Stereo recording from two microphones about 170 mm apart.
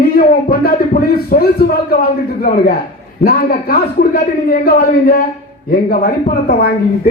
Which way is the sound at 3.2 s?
60° left (ahead or behind).